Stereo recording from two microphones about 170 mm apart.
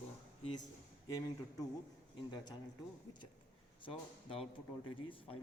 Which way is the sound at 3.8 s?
35° left (ahead or behind).